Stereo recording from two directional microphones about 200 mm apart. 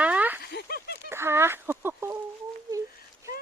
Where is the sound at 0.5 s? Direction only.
50° left (ahead or behind).